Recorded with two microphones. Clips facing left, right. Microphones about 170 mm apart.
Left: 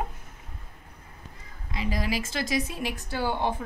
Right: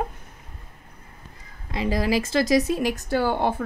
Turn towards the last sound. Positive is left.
turn(degrees=-50)  # may be behind; listen again after turning